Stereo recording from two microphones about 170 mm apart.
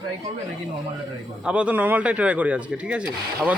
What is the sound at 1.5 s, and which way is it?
Speech, 5° right (ahead or behind).